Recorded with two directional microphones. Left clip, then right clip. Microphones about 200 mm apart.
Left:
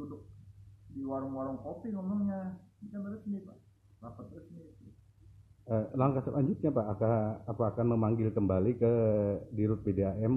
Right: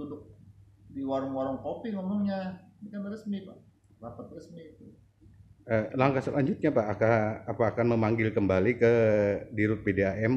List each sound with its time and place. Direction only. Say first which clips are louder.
1.0 s a man's voice: right 6 dB; 30° right (ahead or behind)
5.7 s a man's voice: right 5 dB; 35° right (ahead or behind)